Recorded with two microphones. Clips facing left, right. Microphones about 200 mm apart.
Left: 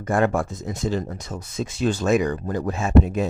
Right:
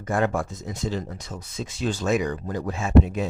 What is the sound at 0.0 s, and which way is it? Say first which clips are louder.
Speech: left 3 dB; 55° left (ahead or behind).